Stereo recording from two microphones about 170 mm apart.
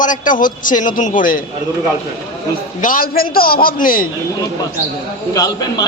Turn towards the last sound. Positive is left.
turn(degrees=20)  # may be behind; listen again after turning